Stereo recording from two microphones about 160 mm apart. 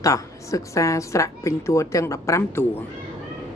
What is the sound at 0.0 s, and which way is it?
Speech, 20° left (ahead or behind).